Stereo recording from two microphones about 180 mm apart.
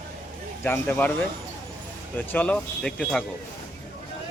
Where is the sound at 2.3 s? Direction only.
10° left (ahead or behind).